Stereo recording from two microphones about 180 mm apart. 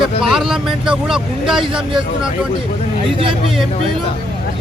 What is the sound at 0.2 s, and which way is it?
Speech, centre (ahead or behind).